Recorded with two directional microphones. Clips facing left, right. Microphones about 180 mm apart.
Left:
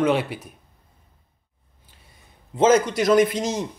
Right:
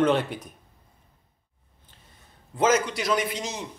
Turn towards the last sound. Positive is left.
turn(degrees=45)  # may be behind; listen again after turning